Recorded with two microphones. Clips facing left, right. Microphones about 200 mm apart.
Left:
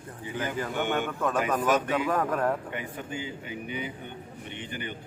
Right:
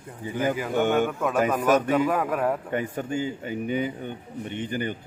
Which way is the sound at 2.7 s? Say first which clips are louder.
Right 8 dB; 45° right (ahead or behind).